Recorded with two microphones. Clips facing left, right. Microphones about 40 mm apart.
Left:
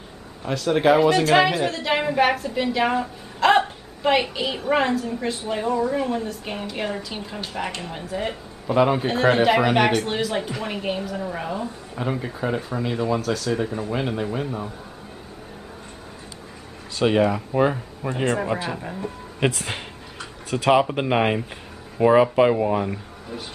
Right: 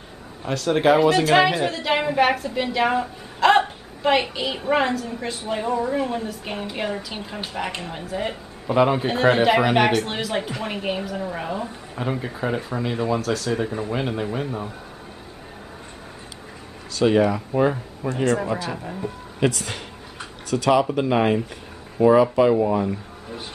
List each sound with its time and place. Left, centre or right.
0.4 s a man's voice: centre
16.9 s speech: centre
19.5 s speech: left